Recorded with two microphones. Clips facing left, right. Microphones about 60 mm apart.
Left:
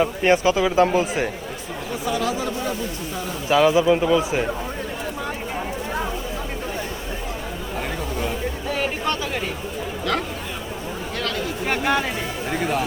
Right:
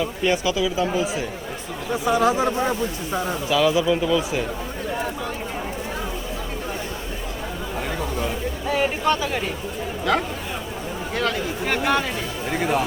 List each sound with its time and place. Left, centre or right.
0.0 s speech: left
2.0 s speech: right
3.5 s speech: left
8.7 s speech: centre
12.5 s speech: centre